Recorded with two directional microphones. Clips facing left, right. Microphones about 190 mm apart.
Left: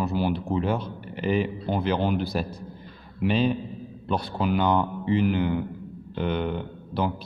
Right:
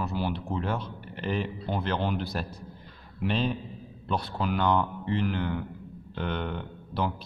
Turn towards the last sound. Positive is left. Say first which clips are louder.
# left 3 dB
turn(degrees=5)  # may be behind; listen again after turning